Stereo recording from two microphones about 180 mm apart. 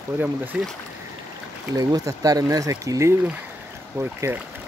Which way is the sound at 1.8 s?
20° right (ahead or behind).